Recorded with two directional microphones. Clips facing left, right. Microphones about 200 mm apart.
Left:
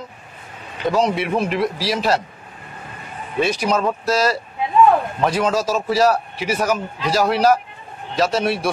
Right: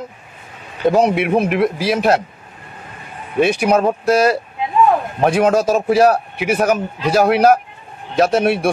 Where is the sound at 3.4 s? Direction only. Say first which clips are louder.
Right 5 dB; 55° right (ahead or behind).